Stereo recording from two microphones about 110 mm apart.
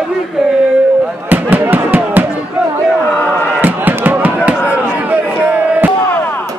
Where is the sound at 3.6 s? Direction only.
15° right (ahead or behind).